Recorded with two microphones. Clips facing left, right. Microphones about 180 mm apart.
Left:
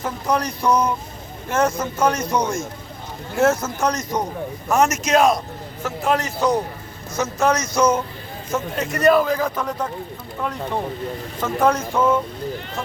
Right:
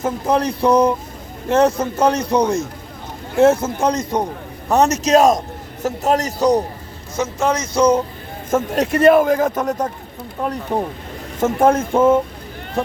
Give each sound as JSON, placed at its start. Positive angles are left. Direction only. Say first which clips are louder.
{"t": 0.0, "sound": "a man's voice", "louder": "right 4 dB", "side_deg": -25}
{"t": 7.2, "sound": "speech", "louder": "right 1 dB", "side_deg": -25}
{"t": 8.4, "sound": "a man's voice", "louder": "right 7 dB", "side_deg": -50}